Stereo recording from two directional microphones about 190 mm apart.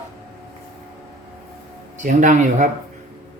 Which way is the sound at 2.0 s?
45° right (ahead or behind).